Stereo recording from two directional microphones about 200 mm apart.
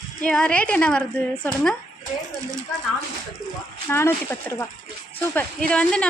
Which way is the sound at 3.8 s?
10° left (ahead or behind).